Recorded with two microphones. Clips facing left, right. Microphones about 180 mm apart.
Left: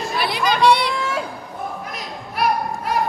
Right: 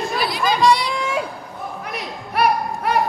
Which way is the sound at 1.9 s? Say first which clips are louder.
Right 4 dB; 65° right (ahead or behind).